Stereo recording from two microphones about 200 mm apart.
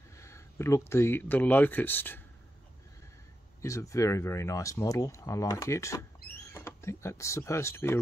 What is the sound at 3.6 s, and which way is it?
Speech, 15° left (ahead or behind).